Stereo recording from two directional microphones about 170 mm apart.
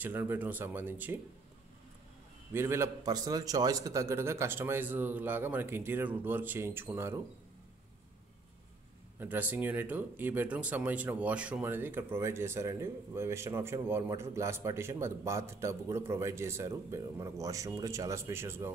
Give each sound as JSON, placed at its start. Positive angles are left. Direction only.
{"t": 0.0, "sound": "a man's voice", "side_deg": -10}
{"t": 2.5, "sound": "a man's voice", "side_deg": -15}
{"t": 9.2, "sound": "a man's voice", "side_deg": -10}